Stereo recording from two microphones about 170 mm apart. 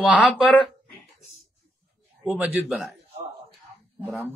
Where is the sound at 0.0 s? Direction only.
10° right (ahead or behind).